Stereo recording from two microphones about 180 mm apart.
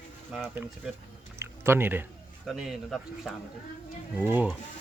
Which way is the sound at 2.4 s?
Centre (ahead or behind).